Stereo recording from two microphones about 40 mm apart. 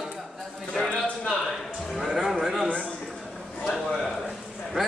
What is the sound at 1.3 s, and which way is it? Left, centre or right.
A man's voice, centre.